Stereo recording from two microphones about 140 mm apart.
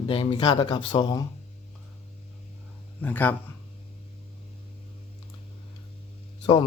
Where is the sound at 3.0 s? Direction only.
10° left (ahead or behind).